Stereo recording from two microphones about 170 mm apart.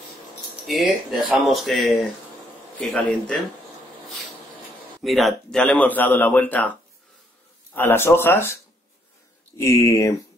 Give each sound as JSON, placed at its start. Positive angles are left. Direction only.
{"t": 0.7, "sound": "speech", "side_deg": 0}
{"t": 5.0, "sound": "a man's voice", "side_deg": 0}
{"t": 9.6, "sound": "a man's voice", "side_deg": 15}